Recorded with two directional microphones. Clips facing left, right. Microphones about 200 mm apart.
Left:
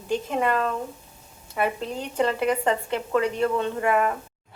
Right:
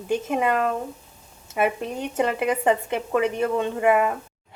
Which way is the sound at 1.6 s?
15° right (ahead or behind).